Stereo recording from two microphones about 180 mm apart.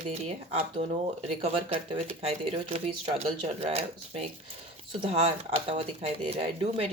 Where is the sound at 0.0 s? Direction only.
35° right (ahead or behind).